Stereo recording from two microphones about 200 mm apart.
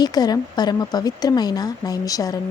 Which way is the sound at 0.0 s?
20° left (ahead or behind).